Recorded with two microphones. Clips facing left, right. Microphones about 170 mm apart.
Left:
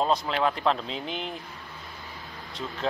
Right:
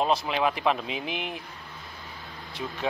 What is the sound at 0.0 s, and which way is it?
Speech, 10° right (ahead or behind).